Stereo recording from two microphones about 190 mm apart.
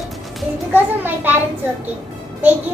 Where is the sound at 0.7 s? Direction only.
10° right (ahead or behind).